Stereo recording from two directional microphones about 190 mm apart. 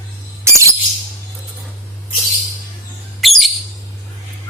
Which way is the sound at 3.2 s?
Centre (ahead or behind).